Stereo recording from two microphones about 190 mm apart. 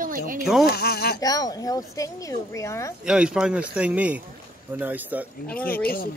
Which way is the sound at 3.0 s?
5° right (ahead or behind).